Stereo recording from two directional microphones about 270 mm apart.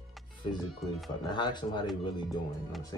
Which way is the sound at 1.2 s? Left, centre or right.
Centre.